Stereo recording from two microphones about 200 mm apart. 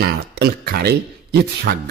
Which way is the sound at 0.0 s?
55° right (ahead or behind).